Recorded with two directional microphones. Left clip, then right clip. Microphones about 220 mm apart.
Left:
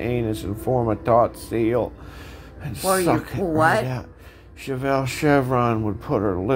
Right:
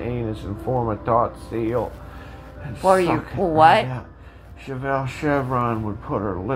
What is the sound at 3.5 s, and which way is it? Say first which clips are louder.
Speech: right 5 dB; 20° left (ahead or behind).